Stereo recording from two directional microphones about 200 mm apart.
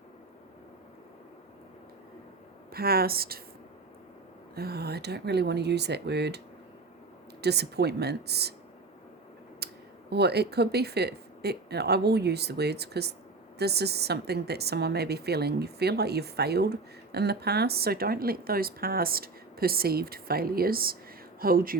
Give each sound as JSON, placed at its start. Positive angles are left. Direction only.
{"t": 2.7, "sound": "a woman's voice", "side_deg": -50}
{"t": 4.5, "sound": "speech", "side_deg": -50}
{"t": 7.4, "sound": "speech", "side_deg": -55}
{"t": 9.6, "sound": "a sound", "side_deg": -55}
{"t": 10.1, "sound": "a woman's voice", "side_deg": -55}